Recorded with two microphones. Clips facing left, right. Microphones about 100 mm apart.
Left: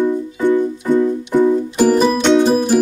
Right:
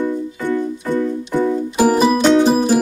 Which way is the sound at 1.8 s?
5° right (ahead or behind).